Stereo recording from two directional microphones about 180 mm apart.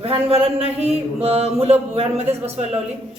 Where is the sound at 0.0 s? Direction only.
35° right (ahead or behind).